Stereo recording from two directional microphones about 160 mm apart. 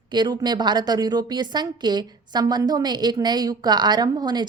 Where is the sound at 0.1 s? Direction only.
25° right (ahead or behind).